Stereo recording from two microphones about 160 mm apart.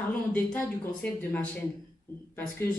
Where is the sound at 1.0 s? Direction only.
5° left (ahead or behind).